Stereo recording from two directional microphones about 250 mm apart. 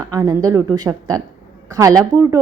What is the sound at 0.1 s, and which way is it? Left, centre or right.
A woman's voice, centre.